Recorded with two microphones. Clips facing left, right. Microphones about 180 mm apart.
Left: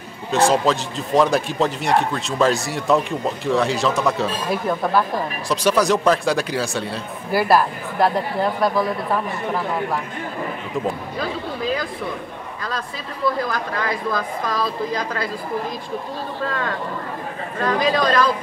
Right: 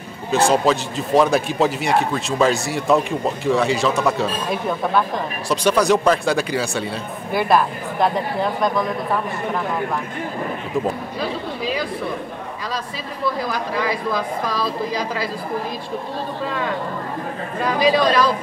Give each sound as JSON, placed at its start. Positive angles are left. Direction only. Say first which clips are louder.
{"t": 0.3, "sound": "a man's voice", "louder": "right 1 dB", "side_deg": 0}
{"t": 13.5, "sound": "a man's voice", "louder": "right 2 dB", "side_deg": -5}
{"t": 17.7, "sound": "a man's voice", "louder": "right 3 dB", "side_deg": -5}